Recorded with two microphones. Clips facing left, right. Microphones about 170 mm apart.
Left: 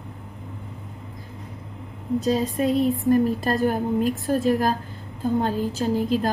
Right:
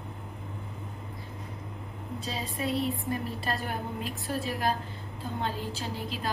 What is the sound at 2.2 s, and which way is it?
A woman's voice, 45° left (ahead or behind).